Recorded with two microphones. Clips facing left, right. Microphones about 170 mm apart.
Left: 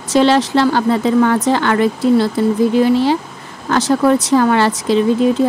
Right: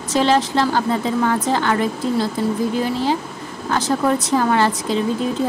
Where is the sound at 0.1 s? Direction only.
75° left (ahead or behind).